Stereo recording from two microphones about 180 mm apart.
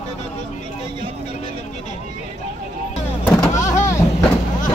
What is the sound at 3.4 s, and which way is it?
Vehicle, 15° left (ahead or behind).